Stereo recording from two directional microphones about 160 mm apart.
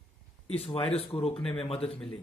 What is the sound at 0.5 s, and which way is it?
A man's voice, 35° left (ahead or behind).